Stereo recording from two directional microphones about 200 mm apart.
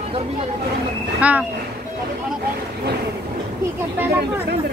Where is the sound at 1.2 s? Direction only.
5° right (ahead or behind).